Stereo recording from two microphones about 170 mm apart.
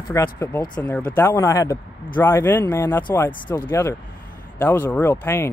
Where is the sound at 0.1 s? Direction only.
15° left (ahead or behind).